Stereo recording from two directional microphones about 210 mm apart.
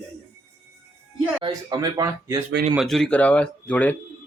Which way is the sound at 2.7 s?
Centre (ahead or behind).